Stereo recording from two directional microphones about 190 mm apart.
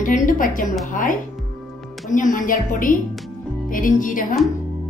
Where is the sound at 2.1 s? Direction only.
45° left (ahead or behind).